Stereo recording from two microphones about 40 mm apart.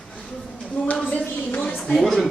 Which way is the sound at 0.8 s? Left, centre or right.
Left.